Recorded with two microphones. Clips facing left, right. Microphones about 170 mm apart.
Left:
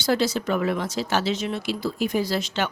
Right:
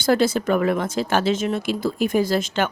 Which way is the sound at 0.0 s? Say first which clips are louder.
Right 4 dB; 50° right (ahead or behind).